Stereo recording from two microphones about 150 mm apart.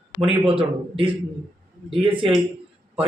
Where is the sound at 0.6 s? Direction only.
35° right (ahead or behind).